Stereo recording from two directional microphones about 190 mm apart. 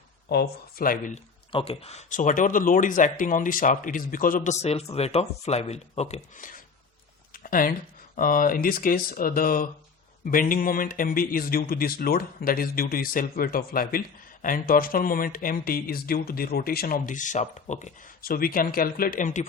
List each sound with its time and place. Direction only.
0.3 s speech: 55° left (ahead or behind)
1.5 s speech: 30° left (ahead or behind)
7.3 s a sound: 45° left (ahead or behind)
8.1 s speech: 45° left (ahead or behind)